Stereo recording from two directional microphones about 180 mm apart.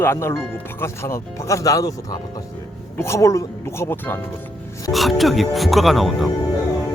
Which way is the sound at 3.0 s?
15° left (ahead or behind).